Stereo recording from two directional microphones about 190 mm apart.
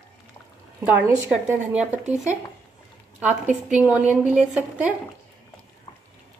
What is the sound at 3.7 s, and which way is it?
Speech, 5° right (ahead or behind).